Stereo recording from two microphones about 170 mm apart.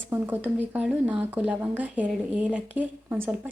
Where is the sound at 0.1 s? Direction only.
10° right (ahead or behind).